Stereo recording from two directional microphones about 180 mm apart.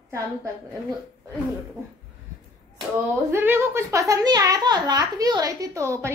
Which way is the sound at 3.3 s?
15° right (ahead or behind).